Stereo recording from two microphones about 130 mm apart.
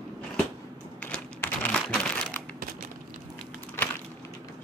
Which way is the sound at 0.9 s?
10° left (ahead or behind).